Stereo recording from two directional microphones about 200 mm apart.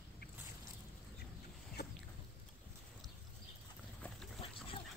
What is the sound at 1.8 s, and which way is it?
Boat, 50° left (ahead or behind).